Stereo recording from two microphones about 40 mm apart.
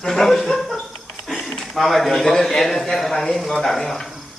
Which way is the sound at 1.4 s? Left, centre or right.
Centre.